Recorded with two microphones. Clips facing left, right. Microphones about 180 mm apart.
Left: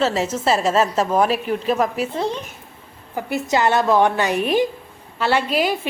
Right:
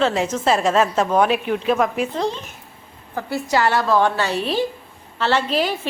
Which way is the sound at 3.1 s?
20° left (ahead or behind).